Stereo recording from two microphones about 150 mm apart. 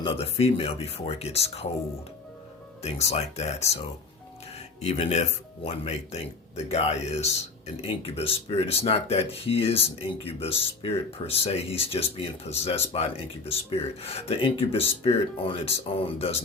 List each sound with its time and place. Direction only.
0.0 s speech: 40° left (ahead or behind)
2.8 s speech: 45° left (ahead or behind)
4.8 s speech: 45° left (ahead or behind)